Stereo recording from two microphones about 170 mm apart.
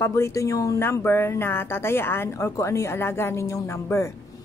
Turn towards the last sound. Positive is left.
turn(degrees=15)  # may be behind; listen again after turning